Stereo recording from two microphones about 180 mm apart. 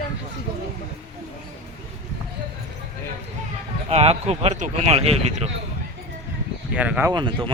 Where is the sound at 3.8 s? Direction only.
35° right (ahead or behind).